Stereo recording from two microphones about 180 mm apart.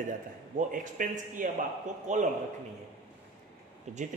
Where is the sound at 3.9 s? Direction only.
40° right (ahead or behind).